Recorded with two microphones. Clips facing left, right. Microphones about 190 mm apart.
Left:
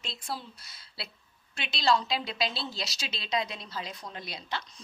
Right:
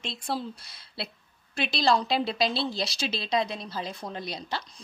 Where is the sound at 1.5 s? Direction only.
30° right (ahead or behind).